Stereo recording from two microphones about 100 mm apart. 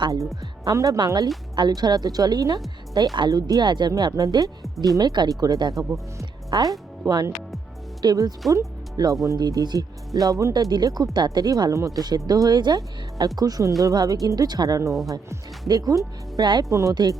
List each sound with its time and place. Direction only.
0.6 s speech: 35° right (ahead or behind)
16.6 s speech: 35° right (ahead or behind)
16.9 s speech: 45° right (ahead or behind)